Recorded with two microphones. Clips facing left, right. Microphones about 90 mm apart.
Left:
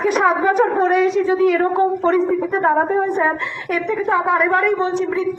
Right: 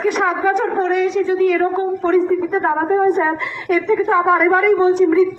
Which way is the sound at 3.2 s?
5° left (ahead or behind).